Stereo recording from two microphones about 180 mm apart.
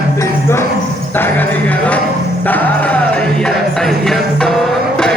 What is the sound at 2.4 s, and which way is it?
Music, 10° left (ahead or behind).